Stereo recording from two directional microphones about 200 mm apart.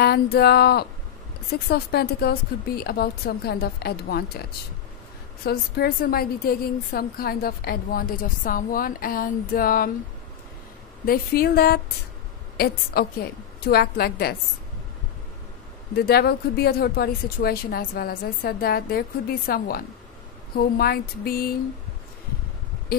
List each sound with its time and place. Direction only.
0.0 s a woman's voice: 50° left (ahead or behind)
5.4 s a woman's voice: 50° left (ahead or behind)
11.1 s a woman's voice: 50° left (ahead or behind)
15.9 s a woman's voice: 50° left (ahead or behind)